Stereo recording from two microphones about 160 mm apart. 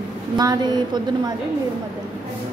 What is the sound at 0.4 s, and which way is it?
Speech, 25° right (ahead or behind).